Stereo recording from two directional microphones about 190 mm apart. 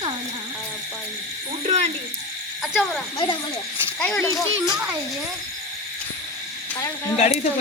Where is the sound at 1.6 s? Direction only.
35° right (ahead or behind).